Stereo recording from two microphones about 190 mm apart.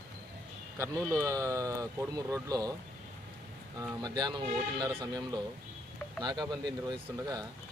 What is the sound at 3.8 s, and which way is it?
Speech, 20° right (ahead or behind).